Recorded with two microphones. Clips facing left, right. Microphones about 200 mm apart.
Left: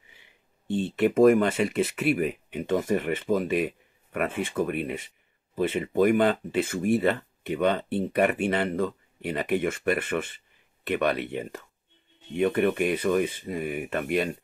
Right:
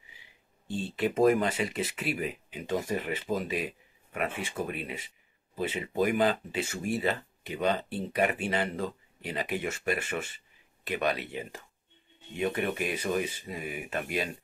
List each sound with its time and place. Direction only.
0.7 s speech: 60° left (ahead or behind)